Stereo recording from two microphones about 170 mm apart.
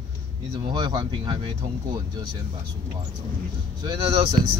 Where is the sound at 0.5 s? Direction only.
25° right (ahead or behind).